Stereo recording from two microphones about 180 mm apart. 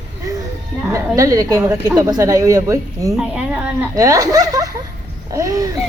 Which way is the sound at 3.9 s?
20° right (ahead or behind).